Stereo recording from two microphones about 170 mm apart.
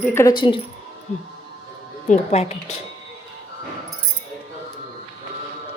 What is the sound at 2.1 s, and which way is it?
Speech, 40° left (ahead or behind).